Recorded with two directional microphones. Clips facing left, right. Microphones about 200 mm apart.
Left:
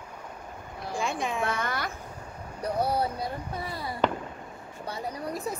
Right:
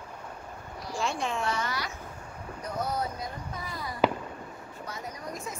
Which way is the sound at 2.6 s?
35° left (ahead or behind).